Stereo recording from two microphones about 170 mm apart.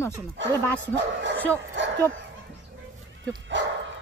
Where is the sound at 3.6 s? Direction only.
90° right.